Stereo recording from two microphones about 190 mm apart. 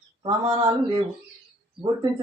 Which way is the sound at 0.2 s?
20° right (ahead or behind).